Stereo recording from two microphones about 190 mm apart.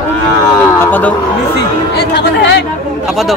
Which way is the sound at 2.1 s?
65° left (ahead or behind).